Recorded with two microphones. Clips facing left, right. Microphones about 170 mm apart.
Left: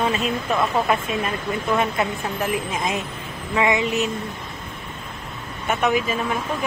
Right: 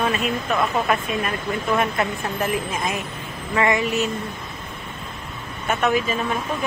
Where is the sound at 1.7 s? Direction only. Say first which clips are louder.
Even; 15° left (ahead or behind).